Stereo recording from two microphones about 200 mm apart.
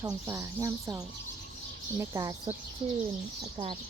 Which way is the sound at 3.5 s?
25° right (ahead or behind).